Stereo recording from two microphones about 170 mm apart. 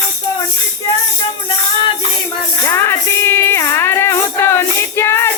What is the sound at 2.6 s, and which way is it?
Music, 15° left (ahead or behind).